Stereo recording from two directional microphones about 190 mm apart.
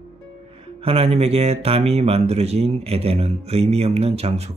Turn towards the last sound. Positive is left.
turn(degrees=-35)  # may be behind; listen again after turning